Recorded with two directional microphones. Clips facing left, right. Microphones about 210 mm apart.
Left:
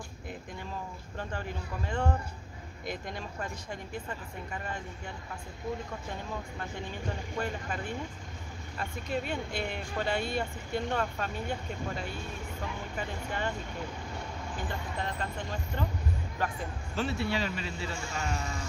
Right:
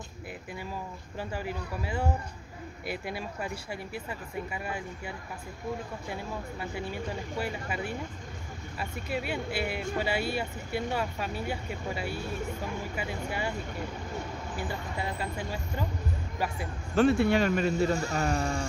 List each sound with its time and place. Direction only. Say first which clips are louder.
1.1 s speech: right 3 dB; 10° right (ahead or behind)
6.6 s speech: right 3 dB; 10° right (ahead or behind)
14.6 s speech: right 2 dB; 10° right (ahead or behind)
16.9 s speech: right 9 dB; 50° right (ahead or behind)